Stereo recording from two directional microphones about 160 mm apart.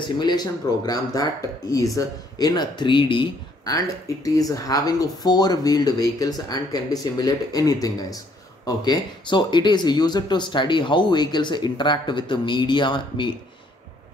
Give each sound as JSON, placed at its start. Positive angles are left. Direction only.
{"t": 0.2, "sound": "speech", "side_deg": 25}